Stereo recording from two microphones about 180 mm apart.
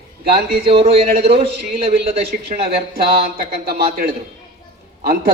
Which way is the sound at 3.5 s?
60° right (ahead or behind).